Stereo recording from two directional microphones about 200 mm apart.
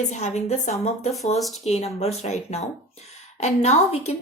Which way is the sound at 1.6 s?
30° left (ahead or behind).